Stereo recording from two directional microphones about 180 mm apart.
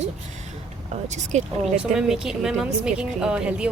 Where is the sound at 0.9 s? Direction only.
40° right (ahead or behind).